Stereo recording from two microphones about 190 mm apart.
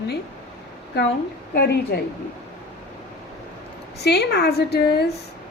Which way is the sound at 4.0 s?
60° left (ahead or behind).